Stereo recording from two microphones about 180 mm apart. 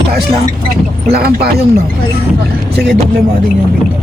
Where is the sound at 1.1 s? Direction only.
60° right (ahead or behind).